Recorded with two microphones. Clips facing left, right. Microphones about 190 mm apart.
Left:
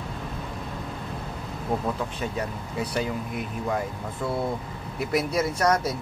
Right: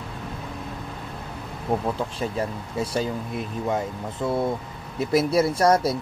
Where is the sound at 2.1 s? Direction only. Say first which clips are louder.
Right 3 dB; 30° right (ahead or behind).